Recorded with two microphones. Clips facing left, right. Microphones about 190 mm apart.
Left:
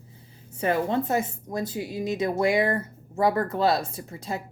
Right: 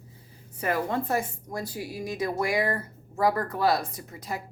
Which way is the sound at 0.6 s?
25° left (ahead or behind).